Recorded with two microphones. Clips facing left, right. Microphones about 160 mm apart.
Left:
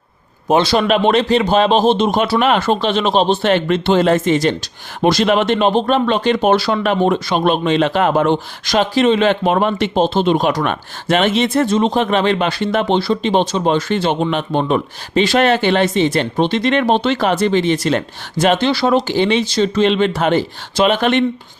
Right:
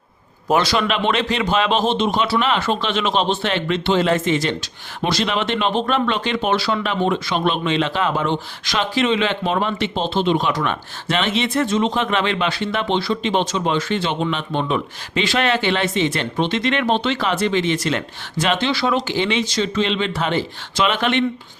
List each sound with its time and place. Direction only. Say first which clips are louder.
0.4 s a man's voice: left 4 dB; 25° left (ahead or behind)
0.8 s speech: left 6 dB; 45° left (ahead or behind)